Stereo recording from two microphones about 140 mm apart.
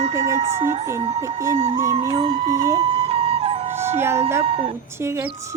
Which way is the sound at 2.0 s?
45° right (ahead or behind).